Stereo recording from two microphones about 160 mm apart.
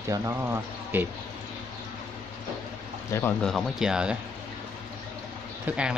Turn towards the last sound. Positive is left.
turn(degrees=-5)  # may be behind; listen again after turning